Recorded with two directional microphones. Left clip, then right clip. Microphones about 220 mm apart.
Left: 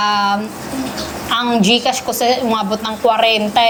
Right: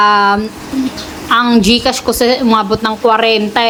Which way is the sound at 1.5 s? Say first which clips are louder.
Right 3 dB; 20° right (ahead or behind).